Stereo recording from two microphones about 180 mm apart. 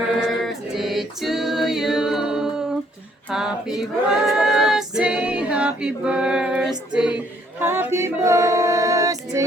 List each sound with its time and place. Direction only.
0.4 s a capella: centre (ahead or behind)
3.2 s a sound: 5° right (ahead or behind)
3.8 s a capella: centre (ahead or behind)
7.6 s female singing: 15° right (ahead or behind)